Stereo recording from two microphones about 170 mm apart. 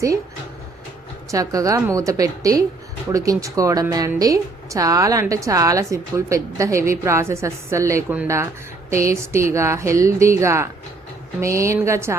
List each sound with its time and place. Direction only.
1.3 s a woman's voice: 20° right (ahead or behind)